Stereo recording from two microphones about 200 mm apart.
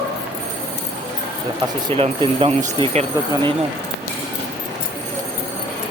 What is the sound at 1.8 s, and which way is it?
Speech, 25° right (ahead or behind).